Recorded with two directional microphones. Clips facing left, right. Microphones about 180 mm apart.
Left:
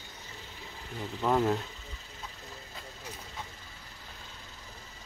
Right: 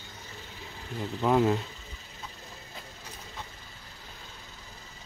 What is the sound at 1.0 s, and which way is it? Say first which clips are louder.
Speech: right 3 dB; 5° right (ahead or behind).